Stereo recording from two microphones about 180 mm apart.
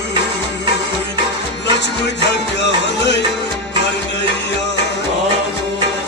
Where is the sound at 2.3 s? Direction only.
75° left (ahead or behind).